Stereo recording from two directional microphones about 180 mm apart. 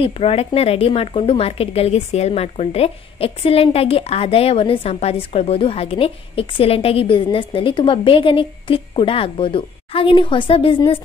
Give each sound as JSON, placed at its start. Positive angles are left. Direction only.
{"t": 0.2, "sound": "a woman's voice", "side_deg": 35}